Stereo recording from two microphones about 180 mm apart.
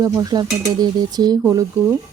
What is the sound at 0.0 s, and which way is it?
Speech, 20° right (ahead or behind).